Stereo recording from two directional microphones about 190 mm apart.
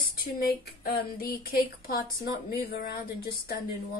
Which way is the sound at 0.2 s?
50° left (ahead or behind).